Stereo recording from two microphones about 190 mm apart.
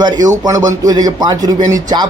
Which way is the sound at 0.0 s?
20° right (ahead or behind).